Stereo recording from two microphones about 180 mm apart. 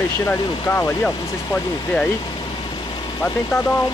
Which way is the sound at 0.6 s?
15° left (ahead or behind).